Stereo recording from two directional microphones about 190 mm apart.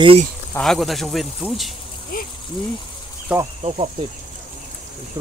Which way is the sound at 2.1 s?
50° left (ahead or behind).